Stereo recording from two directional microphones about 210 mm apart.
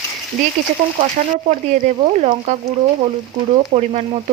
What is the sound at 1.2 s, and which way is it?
Speech, 35° right (ahead or behind).